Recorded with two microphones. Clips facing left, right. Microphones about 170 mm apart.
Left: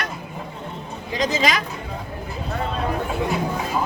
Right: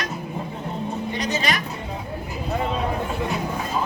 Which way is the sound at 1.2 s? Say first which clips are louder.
Left 6 dB; 90° left.